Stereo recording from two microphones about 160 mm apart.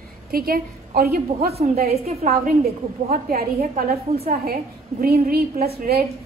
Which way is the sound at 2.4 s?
65° right (ahead or behind).